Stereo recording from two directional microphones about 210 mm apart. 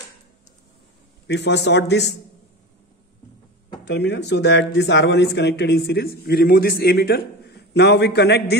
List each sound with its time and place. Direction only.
1.2 s a man's voice: 55° left (ahead or behind)
3.8 s speech: 55° left (ahead or behind)